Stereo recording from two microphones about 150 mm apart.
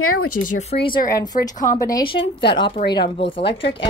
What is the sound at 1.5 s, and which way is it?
Speech, 65° left (ahead or behind).